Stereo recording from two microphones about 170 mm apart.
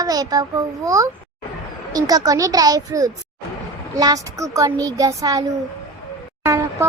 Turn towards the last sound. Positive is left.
turn(degrees=-15)  # may be behind; listen again after turning